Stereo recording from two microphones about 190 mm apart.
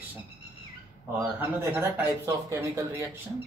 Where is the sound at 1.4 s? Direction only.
10° right (ahead or behind).